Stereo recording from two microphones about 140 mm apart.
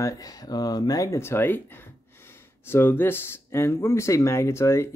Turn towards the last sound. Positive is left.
turn(degrees=20)  # may be behind; listen again after turning